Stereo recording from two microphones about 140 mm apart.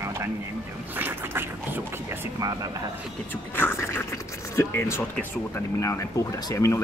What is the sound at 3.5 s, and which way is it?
Speech, 15° left (ahead or behind).